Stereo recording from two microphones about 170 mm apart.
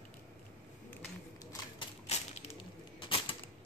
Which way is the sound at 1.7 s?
35° left (ahead or behind).